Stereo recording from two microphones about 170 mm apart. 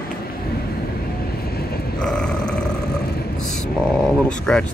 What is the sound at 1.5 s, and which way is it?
Vehicle, 65° left (ahead or behind).